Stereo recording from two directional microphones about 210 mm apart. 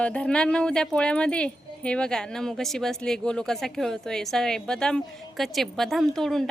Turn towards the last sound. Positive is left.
turn(degrees=0)  # may be behind; listen again after turning